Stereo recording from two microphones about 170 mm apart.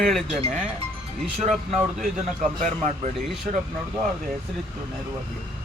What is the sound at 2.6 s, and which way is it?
Speech, 45° right (ahead or behind).